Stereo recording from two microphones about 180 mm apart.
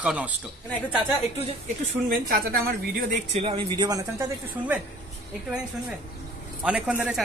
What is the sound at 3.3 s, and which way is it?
Speech, 35° right (ahead or behind).